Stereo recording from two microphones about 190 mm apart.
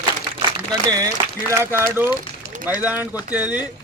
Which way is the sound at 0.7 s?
20° right (ahead or behind).